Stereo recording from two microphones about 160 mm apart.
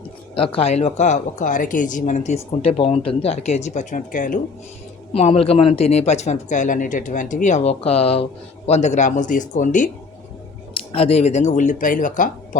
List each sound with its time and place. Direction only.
0.3 s speech: 35° left (ahead or behind); by 4.4 s 55° left (ahead or behind)
5.1 s speech: 40° left (ahead or behind); by 9.9 s 55° left (ahead or behind)
10.9 s speech: 40° left (ahead or behind); by 12.3 s 55° left (ahead or behind)